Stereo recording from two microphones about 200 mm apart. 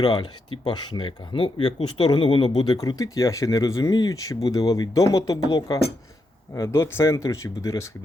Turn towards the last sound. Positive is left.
turn(degrees=15)  # may be behind; listen again after turning